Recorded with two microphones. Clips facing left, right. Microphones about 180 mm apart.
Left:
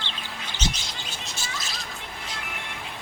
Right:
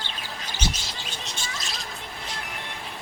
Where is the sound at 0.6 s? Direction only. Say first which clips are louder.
Even; 10° right (ahead or behind).